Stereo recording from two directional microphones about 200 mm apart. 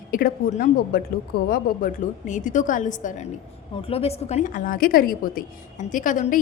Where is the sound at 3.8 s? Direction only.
30° left (ahead or behind).